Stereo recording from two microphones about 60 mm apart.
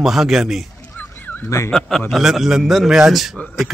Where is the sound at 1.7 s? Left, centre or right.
Centre.